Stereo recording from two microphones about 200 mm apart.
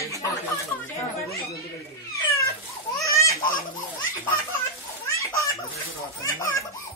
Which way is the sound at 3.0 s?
15° left (ahead or behind).